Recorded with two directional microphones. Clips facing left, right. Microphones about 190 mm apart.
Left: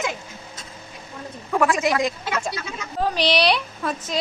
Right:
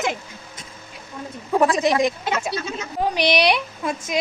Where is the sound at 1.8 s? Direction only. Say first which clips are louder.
Right 3 dB; 20° right (ahead or behind).